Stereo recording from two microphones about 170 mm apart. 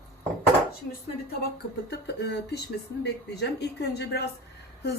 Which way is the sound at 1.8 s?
75° left (ahead or behind).